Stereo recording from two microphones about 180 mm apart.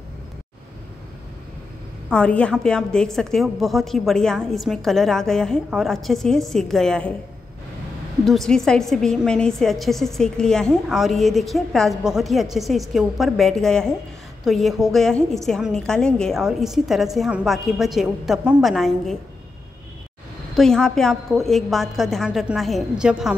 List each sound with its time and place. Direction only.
2.0 s a woman's voice: 5° left (ahead or behind)
8.3 s a woman's voice: centre (ahead or behind)
20.5 s a woman's voice: 5° left (ahead or behind)